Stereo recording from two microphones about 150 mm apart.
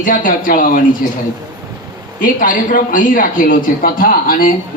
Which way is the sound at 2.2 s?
65° left (ahead or behind).